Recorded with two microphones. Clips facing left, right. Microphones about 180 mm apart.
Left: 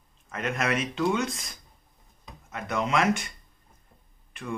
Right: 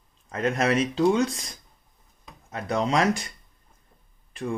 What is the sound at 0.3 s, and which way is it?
Speech, 30° right (ahead or behind).